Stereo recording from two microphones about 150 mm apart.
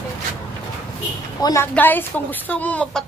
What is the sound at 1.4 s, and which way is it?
A woman's voice, 20° left (ahead or behind).